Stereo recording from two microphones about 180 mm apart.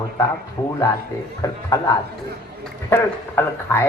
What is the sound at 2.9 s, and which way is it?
Speech, 15° left (ahead or behind).